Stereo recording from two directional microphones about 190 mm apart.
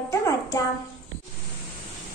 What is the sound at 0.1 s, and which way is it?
Child singing, 15° left (ahead or behind).